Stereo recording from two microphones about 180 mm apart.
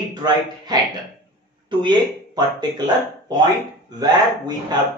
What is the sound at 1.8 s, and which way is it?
Speech, 25° right (ahead or behind).